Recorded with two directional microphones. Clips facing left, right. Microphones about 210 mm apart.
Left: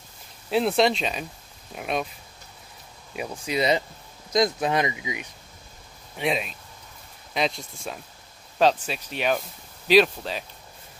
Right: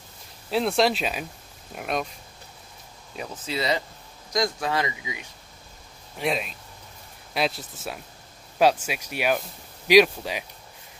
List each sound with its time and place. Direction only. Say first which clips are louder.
0.5 s speech: left 1 dB; centre (ahead or behind)
3.2 s speech: left 4 dB; 15° left (ahead or behind)
6.1 s speech: left 1 dB; centre (ahead or behind)